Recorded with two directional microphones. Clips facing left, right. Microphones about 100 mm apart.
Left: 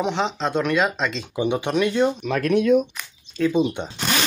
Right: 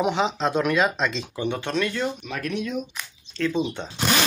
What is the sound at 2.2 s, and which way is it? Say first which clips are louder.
Speech: left 9 dB; 55° left (ahead or behind).